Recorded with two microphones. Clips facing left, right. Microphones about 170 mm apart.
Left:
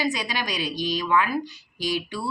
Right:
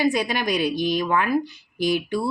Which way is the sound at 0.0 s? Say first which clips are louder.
Right 6 dB; 55° right (ahead or behind).